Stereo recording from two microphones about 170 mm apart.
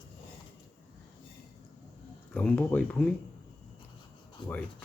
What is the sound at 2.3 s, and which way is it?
Speech, 5° left (ahead or behind).